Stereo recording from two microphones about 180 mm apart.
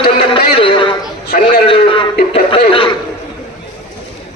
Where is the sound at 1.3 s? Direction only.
55° left (ahead or behind).